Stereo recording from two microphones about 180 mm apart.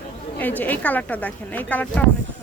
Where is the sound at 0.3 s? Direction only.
10° left (ahead or behind).